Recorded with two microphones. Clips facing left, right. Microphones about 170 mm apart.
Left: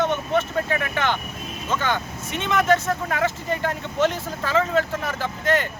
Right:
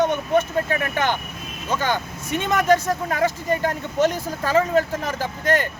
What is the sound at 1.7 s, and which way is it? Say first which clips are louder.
A man's voice: right 1 dB; 40° right (ahead or behind).